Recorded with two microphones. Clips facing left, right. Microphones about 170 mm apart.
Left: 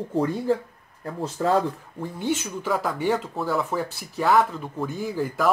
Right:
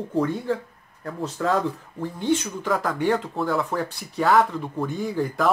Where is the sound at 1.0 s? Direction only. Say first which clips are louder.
Left 1 dB; 25° left (ahead or behind).